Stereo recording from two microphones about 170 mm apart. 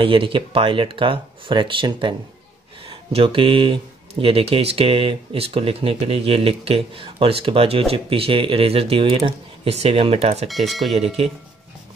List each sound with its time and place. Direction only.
0.0 s speech: 30° right (ahead or behind)
10.5 s speech: centre (ahead or behind)